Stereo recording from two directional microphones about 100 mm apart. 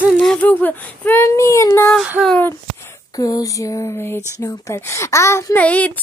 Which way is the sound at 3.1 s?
35° left (ahead or behind).